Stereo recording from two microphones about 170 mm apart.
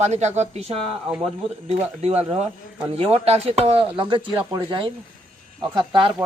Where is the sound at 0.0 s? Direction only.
40° right (ahead or behind).